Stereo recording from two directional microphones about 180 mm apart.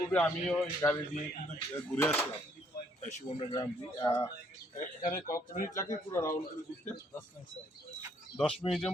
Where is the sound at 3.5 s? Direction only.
20° left (ahead or behind).